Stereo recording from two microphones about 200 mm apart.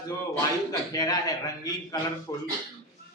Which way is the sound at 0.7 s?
20° left (ahead or behind).